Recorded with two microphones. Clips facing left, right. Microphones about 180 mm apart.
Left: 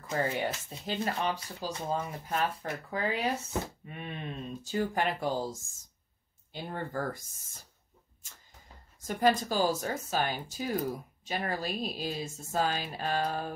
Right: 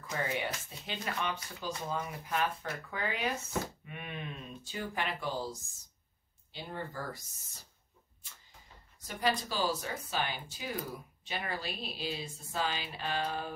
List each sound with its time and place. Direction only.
0.1 s speech: 35° left (ahead or behind); by 7.6 s 50° left (ahead or behind)
8.2 s a sound: 45° left (ahead or behind)
9.0 s speech: 45° left (ahead or behind)